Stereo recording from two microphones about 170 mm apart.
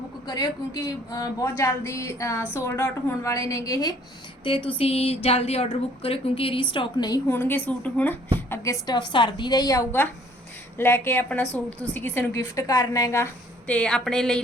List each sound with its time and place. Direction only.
0.3 s a woman's voice: 20° left (ahead or behind)
4.4 s a woman's voice: 30° left (ahead or behind)
7.3 s a woman's voice: 10° left (ahead or behind)
13.7 s a woman's voice: 5° left (ahead or behind)